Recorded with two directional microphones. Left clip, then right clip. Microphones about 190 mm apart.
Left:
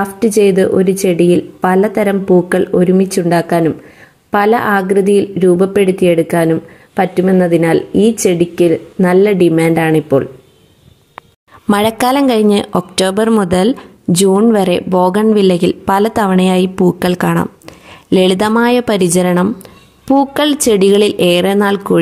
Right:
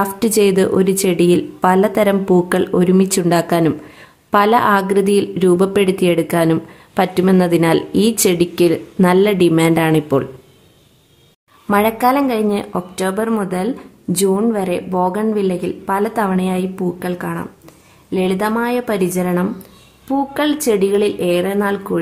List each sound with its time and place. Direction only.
0.0 s a woman's voice: 10° left (ahead or behind)
11.7 s a woman's voice: 35° left (ahead or behind)